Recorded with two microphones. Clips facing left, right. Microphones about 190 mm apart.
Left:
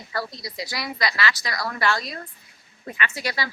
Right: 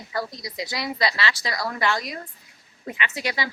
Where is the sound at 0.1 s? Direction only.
15° right (ahead or behind).